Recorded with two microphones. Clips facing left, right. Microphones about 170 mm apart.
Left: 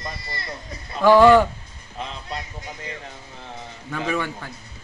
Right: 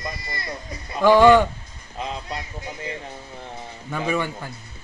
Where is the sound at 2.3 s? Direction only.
20° right (ahead or behind).